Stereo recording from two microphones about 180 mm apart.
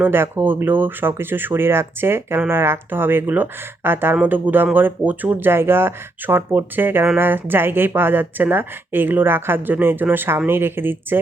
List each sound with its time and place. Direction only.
0.0 s speech: 10° right (ahead or behind)